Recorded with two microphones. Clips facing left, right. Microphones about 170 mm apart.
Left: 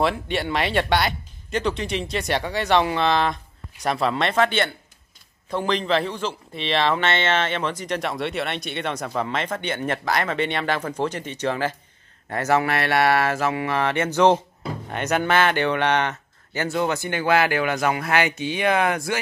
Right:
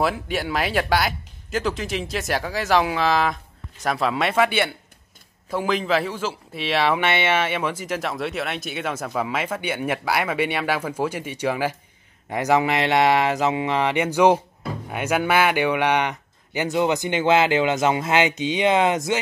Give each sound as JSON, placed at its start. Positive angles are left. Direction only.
{"t": 0.0, "sound": "speech", "side_deg": 0}